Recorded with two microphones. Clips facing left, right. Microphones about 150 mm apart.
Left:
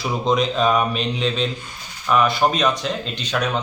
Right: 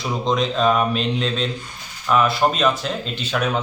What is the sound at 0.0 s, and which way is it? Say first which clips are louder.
Speech: left 1 dB; centre (ahead or behind).